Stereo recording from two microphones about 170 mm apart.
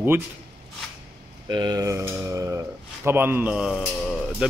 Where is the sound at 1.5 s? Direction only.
25° right (ahead or behind).